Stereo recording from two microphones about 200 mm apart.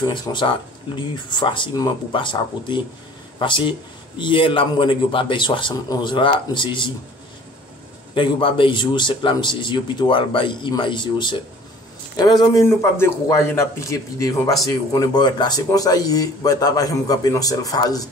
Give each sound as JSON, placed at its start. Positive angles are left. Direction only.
{"t": 0.0, "sound": "a man's voice", "side_deg": 20}
{"t": 8.1, "sound": "a man's voice", "side_deg": 25}